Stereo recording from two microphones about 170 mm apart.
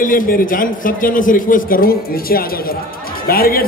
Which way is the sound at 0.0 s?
55° left (ahead or behind).